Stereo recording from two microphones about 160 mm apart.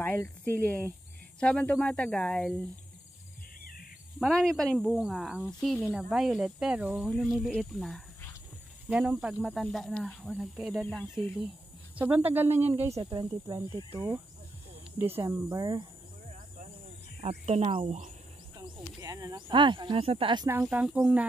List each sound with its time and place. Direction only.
0.0 s speech: 10° left (ahead or behind)
4.2 s speech: 5° left (ahead or behind)
12.0 s speech: 10° right (ahead or behind)
17.2 s speech: 40° right (ahead or behind)
18.6 s speech: 20° right (ahead or behind)
20.4 s speech: 15° right (ahead or behind)